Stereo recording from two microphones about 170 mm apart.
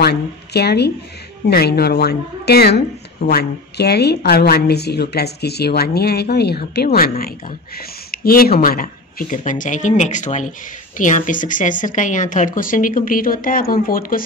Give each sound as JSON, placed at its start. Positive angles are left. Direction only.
{"t": 0.0, "sound": "a woman's voice", "side_deg": 70}